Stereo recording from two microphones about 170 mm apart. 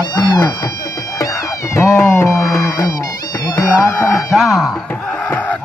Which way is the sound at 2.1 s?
20° left (ahead or behind).